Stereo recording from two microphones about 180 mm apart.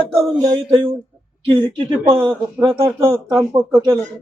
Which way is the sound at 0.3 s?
20° right (ahead or behind).